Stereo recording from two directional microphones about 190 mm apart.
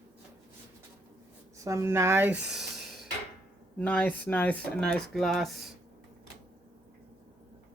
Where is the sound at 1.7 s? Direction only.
15° right (ahead or behind).